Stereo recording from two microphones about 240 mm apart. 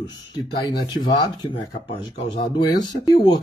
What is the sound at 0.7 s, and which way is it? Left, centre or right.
Speech, centre.